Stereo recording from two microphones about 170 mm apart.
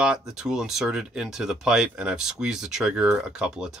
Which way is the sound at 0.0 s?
5° right (ahead or behind).